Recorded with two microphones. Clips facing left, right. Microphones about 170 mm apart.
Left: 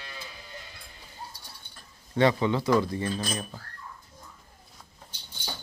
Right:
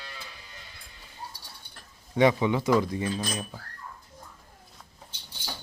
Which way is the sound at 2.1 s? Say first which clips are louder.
Right 1 dB; 15° right (ahead or behind).